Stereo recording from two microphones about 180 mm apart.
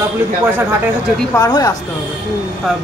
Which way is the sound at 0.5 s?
10° right (ahead or behind).